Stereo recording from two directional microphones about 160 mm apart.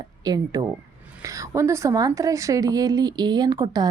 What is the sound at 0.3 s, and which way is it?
A woman's voice, 25° right (ahead or behind).